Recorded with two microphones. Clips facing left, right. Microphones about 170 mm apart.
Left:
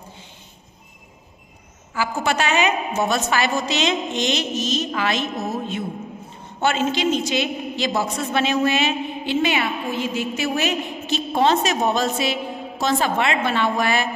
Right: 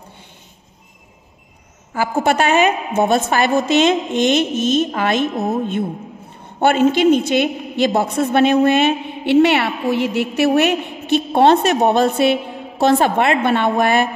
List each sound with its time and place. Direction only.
2.0 s a woman's voice: 50° right (ahead or behind)